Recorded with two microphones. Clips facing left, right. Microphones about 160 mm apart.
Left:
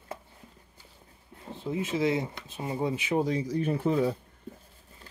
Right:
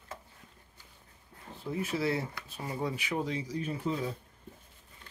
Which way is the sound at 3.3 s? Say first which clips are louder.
Left 7 dB; 45° left (ahead or behind).